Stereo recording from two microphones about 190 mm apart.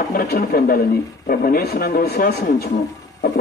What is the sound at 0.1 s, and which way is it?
A man's voice, 50° left (ahead or behind).